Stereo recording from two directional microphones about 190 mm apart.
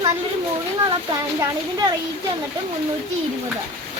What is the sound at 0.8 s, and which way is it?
Speech, 20° right (ahead or behind).